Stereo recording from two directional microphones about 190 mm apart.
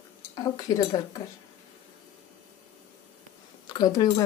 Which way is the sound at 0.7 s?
20° left (ahead or behind).